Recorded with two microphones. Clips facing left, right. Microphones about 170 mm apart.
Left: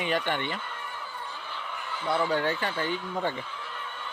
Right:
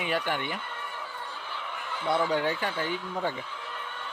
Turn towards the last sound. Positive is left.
turn(degrees=-10)  # may be behind; listen again after turning